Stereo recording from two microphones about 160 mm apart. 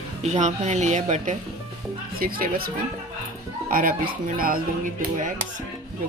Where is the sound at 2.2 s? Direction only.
65° right (ahead or behind).